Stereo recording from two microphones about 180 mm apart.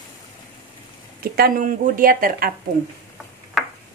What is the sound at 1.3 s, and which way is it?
Speech, 55° right (ahead or behind).